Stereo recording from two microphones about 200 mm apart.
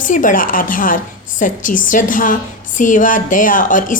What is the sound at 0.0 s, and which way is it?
A woman's voice, 40° left (ahead or behind).